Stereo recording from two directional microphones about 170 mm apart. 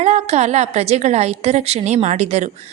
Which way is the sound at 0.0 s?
40° right (ahead or behind).